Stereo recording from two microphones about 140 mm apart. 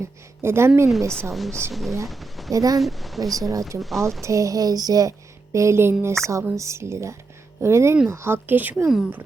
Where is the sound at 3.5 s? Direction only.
20° right (ahead or behind).